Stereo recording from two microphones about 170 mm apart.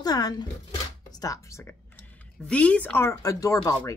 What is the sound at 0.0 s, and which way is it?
Speech, 25° left (ahead or behind).